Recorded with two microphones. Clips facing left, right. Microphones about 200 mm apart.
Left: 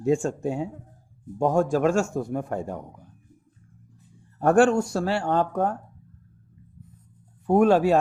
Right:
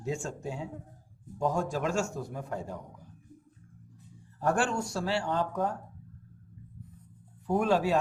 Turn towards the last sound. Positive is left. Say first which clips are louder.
# left 8 dB
turn(degrees=55)  # may be behind; listen again after turning